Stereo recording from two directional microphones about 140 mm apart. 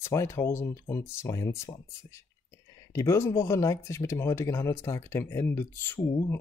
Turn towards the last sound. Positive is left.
turn(degrees=20)  # may be behind; listen again after turning